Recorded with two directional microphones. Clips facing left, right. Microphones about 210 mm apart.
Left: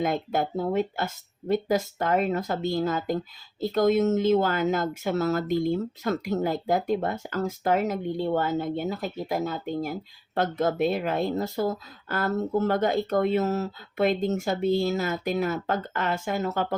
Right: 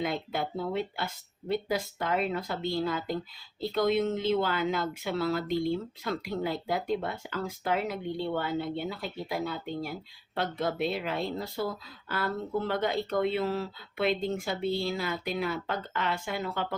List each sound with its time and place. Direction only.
0.0 s speech: 45° left (ahead or behind)